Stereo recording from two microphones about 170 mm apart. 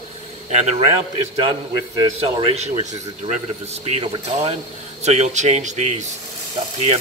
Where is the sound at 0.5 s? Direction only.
40° right (ahead or behind).